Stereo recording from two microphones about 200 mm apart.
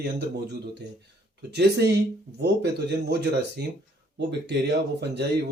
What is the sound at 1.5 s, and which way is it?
Speech, 55° right (ahead or behind).